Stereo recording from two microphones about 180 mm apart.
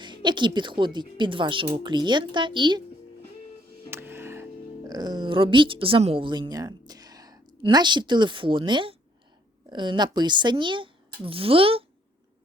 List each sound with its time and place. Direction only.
0.0 s a woman's voice: 25° right (ahead or behind)
3.8 s music: 15° right (ahead or behind)
4.9 s speech: 25° right (ahead or behind)